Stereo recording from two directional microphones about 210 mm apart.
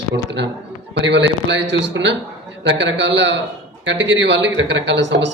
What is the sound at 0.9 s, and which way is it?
A man's voice, 55° right (ahead or behind).